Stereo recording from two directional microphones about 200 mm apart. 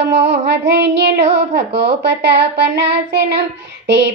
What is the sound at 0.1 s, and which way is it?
Child singing, 60° right (ahead or behind).